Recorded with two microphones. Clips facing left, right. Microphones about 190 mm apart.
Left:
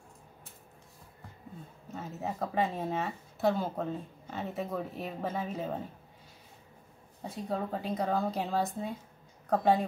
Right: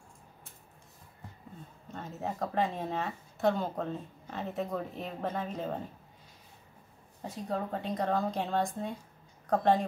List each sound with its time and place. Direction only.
1.9 s speech: 5° left (ahead or behind)
7.2 s speech: centre (ahead or behind)